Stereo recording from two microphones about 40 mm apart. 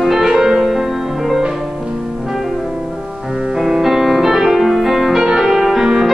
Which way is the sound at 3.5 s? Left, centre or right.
Centre.